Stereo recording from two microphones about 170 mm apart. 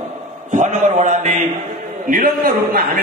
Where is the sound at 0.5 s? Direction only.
45° right (ahead or behind); by 3.0 s 60° right (ahead or behind).